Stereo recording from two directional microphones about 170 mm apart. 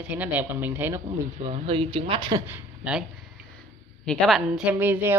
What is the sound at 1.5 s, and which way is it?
Speech, 30° right (ahead or behind).